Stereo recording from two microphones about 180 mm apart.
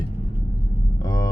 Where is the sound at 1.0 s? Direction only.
20° left (ahead or behind).